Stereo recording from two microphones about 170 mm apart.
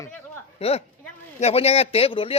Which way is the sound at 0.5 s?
35° left (ahead or behind).